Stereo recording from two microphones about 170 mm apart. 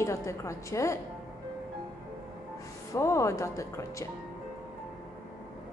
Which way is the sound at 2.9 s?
15° left (ahead or behind).